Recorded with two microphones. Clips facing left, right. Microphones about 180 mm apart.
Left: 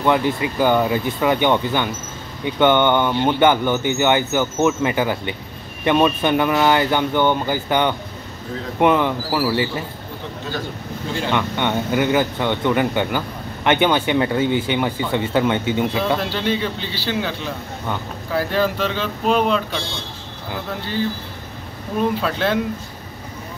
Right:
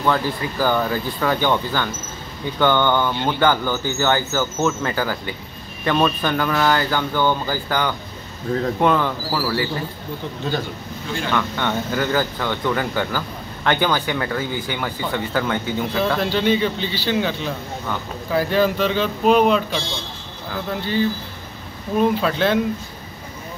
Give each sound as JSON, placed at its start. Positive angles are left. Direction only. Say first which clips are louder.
{"t": 0.0, "sound": "speech", "louder": "left 3 dB", "side_deg": 20}
{"t": 11.1, "sound": "speech", "louder": "left 1 dB", "side_deg": 20}
{"t": 16.2, "sound": "speech", "louder": "right 3 dB", "side_deg": 0}
{"t": 22.2, "sound": "speech", "louder": "right 2 dB", "side_deg": 0}